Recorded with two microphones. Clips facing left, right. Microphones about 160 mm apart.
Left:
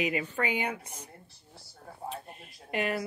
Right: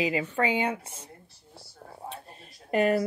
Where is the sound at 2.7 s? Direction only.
40° right (ahead or behind).